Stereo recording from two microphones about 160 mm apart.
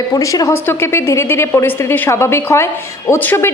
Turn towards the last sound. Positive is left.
turn(degrees=15)  # may be behind; listen again after turning